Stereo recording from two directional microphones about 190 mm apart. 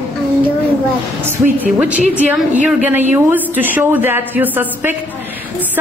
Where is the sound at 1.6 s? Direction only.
5° right (ahead or behind).